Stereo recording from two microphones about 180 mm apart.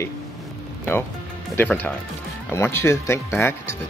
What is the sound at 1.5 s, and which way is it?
Speech, 10° left (ahead or behind).